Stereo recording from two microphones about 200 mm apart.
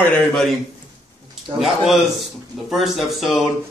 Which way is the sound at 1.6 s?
Centre (ahead or behind).